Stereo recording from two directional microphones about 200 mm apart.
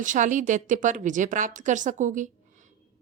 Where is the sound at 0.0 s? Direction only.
40° right (ahead or behind).